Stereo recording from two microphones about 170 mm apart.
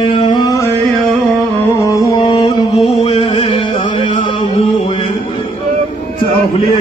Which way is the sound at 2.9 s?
35° left (ahead or behind).